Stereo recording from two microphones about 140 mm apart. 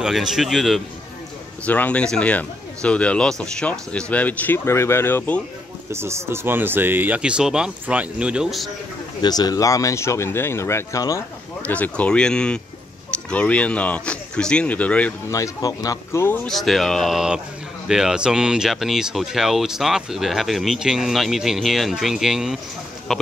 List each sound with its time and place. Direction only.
0.0 s speech: 5° right (ahead or behind)
1.6 s speech: 10° left (ahead or behind)
5.9 s speech: 20° right (ahead or behind); by 8.6 s 5° right (ahead or behind)
9.2 s speech: 30° left (ahead or behind)
11.6 s speech: 10° left (ahead or behind)
15.2 s speech: 25° left (ahead or behind)
16.4 s speech: centre (ahead or behind)